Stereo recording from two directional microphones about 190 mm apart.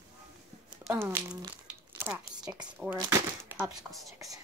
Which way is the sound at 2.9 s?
15° right (ahead or behind).